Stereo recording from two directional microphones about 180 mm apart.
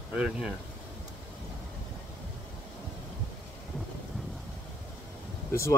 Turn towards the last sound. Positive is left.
turn(degrees=15)  # may be behind; listen again after turning